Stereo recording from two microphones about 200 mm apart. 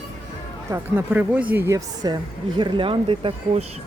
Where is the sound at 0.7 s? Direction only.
10° right (ahead or behind); by 3.8 s 30° right (ahead or behind).